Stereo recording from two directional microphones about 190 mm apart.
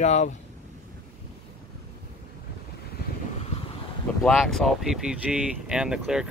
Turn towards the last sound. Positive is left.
turn(degrees=-5)  # may be behind; listen again after turning